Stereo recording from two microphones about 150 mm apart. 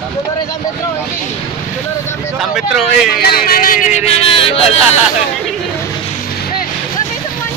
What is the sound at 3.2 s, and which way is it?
Speech, 85° left.